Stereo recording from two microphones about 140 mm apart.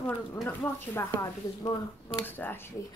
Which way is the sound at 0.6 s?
20° left (ahead or behind).